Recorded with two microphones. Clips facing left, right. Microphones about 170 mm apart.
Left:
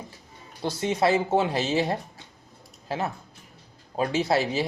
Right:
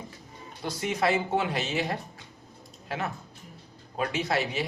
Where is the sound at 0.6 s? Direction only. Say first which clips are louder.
Left 4 dB; 30° left (ahead or behind).